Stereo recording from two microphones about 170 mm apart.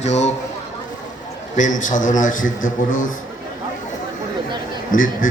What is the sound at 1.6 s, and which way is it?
A man's voice, 50° left (ahead or behind).